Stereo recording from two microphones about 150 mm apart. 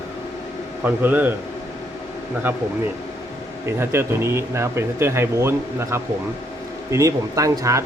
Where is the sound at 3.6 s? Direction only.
15° right (ahead or behind).